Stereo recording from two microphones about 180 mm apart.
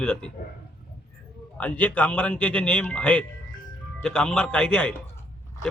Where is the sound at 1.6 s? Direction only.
10° left (ahead or behind).